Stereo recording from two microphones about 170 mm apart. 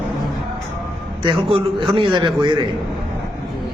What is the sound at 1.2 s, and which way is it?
A man's voice, 30° right (ahead or behind).